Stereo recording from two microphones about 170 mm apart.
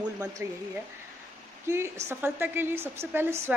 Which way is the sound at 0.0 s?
10° right (ahead or behind).